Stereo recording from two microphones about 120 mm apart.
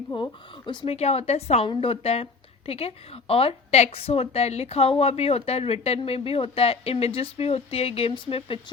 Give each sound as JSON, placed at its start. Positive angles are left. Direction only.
{"t": 0.1, "sound": "speech", "side_deg": 40}
{"t": 0.9, "sound": "a woman's voice", "side_deg": 60}